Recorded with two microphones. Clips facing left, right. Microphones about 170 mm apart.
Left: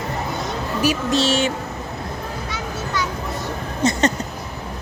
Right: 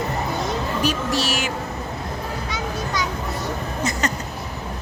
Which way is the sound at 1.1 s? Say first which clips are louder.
Left 5 dB; 25° left (ahead or behind).